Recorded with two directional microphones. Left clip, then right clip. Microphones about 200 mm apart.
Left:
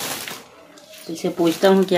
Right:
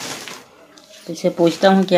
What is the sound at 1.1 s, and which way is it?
Speech, 35° right (ahead or behind).